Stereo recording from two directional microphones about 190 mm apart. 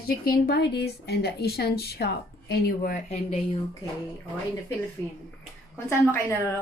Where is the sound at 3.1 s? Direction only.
35° left (ahead or behind).